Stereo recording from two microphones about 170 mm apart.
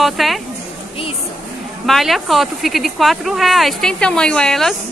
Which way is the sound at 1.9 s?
Centre (ahead or behind).